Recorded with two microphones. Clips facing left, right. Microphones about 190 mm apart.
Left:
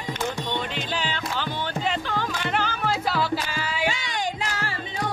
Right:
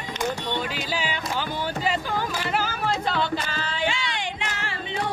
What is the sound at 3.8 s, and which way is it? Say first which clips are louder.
Music: even; 40° left (ahead or behind).